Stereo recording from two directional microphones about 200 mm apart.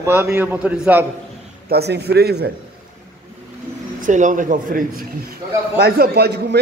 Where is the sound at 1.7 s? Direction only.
55° right (ahead or behind).